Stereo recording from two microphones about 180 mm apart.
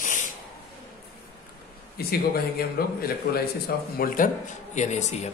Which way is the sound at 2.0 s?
60° left (ahead or behind).